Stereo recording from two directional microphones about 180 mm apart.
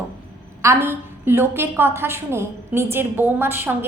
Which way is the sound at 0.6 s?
15° right (ahead or behind).